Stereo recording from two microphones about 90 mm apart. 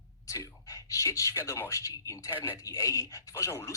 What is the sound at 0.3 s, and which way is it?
Speech, 40° left (ahead or behind).